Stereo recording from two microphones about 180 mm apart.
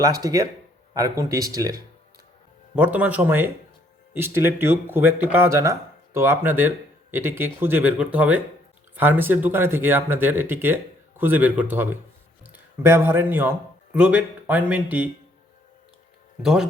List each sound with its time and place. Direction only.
0.0 s speech: 20° right (ahead or behind)
2.7 s speech: 10° right (ahead or behind)
16.4 s speech: 5° right (ahead or behind)